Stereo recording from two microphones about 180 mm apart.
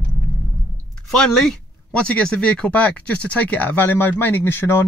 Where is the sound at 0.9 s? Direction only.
5° left (ahead or behind).